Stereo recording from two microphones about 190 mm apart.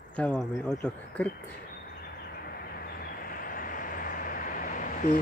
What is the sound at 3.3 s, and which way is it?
Vehicle, 45° left (ahead or behind).